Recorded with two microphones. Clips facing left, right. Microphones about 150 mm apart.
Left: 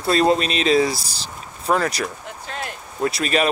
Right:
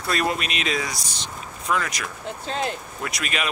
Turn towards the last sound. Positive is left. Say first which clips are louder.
# left 9 dB
turn(degrees=35)  # may be behind; listen again after turning